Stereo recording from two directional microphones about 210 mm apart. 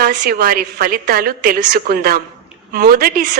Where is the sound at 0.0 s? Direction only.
45° right (ahead or behind).